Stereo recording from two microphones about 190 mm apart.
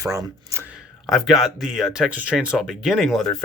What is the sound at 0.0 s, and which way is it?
Speech, 15° right (ahead or behind).